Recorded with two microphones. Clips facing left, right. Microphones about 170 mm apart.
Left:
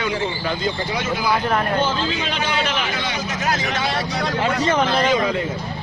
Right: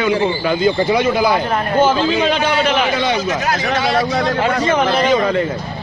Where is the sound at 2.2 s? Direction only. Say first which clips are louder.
Right 8 dB; 70° right (ahead or behind).